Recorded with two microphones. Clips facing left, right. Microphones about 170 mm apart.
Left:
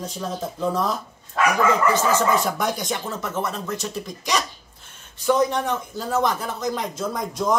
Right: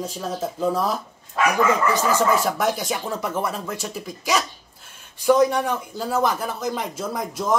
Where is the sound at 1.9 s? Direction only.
15° right (ahead or behind).